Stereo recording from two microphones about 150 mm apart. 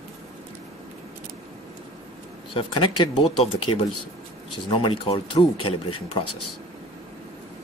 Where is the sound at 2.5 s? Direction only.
35° left (ahead or behind).